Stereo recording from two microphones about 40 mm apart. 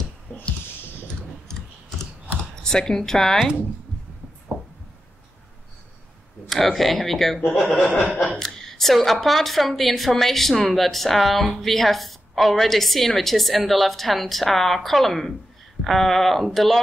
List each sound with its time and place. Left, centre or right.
0.3 s a sound: left
2.5 s a woman's voice: centre
4.5 s a sound: right
6.5 s a woman's voice: centre
7.5 s speech: centre
8.4 s a woman's voice: centre